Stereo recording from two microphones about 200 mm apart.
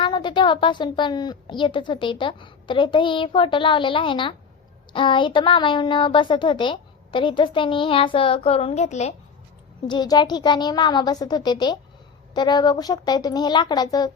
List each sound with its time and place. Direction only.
0.0 s a woman's voice: 25° left (ahead or behind)
9.9 s a woman's voice: 20° left (ahead or behind)